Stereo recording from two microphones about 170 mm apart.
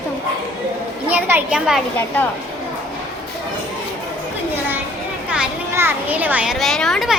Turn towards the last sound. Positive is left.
turn(degrees=0)  # may be behind; listen again after turning